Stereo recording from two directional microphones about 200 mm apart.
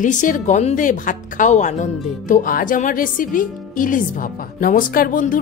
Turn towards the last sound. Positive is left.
turn(degrees=45)  # may be behind; listen again after turning